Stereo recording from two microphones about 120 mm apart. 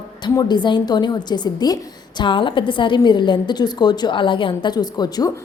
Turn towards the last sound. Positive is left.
turn(degrees=35)  # may be behind; listen again after turning